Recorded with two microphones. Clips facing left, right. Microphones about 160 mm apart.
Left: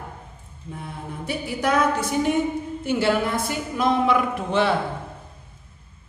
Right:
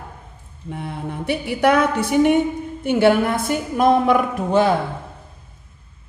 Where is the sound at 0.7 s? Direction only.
70° right (ahead or behind); by 4.7 s 40° right (ahead or behind).